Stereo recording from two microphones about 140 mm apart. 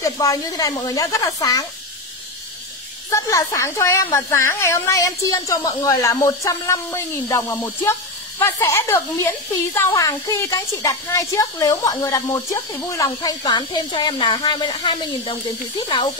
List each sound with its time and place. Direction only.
0.0 s a woman's voice: 25° left (ahead or behind)
3.1 s a woman's voice: 20° left (ahead or behind)